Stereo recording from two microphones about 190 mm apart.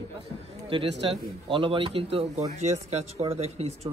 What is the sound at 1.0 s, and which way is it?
Speech, 30° right (ahead or behind).